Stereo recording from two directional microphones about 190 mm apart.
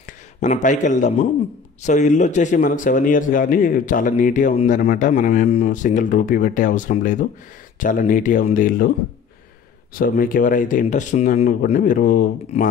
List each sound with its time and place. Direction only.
0.4 s a man's voice: 40° left (ahead or behind)
9.9 s speech: 50° left (ahead or behind)